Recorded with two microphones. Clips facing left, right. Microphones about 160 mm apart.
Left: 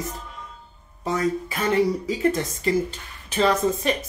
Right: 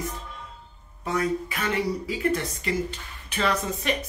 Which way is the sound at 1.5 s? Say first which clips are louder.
Left 6 dB; 40° left (ahead or behind).